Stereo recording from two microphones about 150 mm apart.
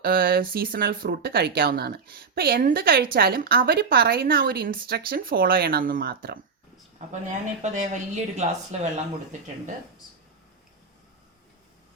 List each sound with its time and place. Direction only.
0.0 s a woman's voice: 80° right
7.1 s speech: 55° right (ahead or behind)